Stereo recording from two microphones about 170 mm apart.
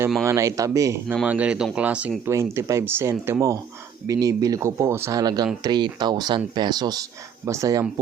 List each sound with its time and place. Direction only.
0.3 s speech: 20° right (ahead or behind)
1.0 s speech: 5° right (ahead or behind); by 7.9 s 20° right (ahead or behind)